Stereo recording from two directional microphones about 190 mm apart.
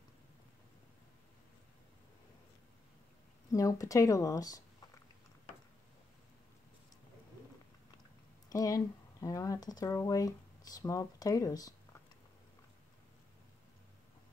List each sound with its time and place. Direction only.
3.5 s speech: 15° left (ahead or behind)
8.5 s speech: 20° left (ahead or behind)